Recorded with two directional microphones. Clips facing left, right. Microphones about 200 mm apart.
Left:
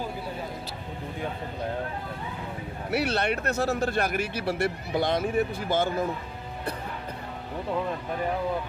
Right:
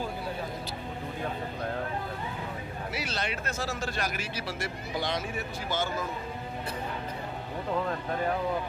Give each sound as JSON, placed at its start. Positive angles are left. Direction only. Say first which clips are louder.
{"t": 2.9, "sound": "a man's voice", "louder": "left 10 dB", "side_deg": 60}